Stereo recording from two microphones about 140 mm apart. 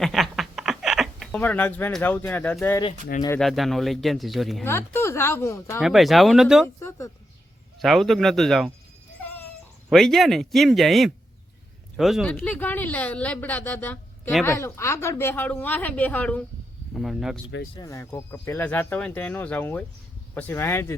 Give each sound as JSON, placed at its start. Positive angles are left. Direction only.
{"t": 0.0, "sound": "a sound", "side_deg": 0}
{"t": 1.4, "sound": "speech", "side_deg": 10}
{"t": 4.6, "sound": "speech", "side_deg": 15}
{"t": 5.8, "sound": "speech", "side_deg": 0}
{"t": 6.7, "sound": "speech", "side_deg": 20}
{"t": 7.8, "sound": "speech", "side_deg": 0}
{"t": 9.2, "sound": "a sound", "side_deg": 15}
{"t": 9.9, "sound": "speech", "side_deg": 0}
{"t": 12.3, "sound": "speech", "side_deg": 10}
{"t": 16.9, "sound": "speech", "side_deg": 0}
{"t": 17.7, "sound": "speech", "side_deg": 20}